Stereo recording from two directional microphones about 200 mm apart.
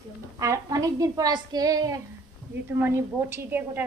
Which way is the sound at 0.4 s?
15° right (ahead or behind).